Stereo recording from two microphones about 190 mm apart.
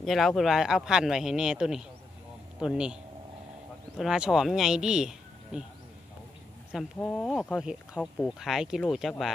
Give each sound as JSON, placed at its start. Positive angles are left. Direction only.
{"t": 0.0, "sound": "speech", "side_deg": 0}
{"t": 7.0, "sound": "speech", "side_deg": 5}